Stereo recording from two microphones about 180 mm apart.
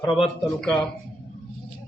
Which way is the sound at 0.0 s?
30° left (ahead or behind).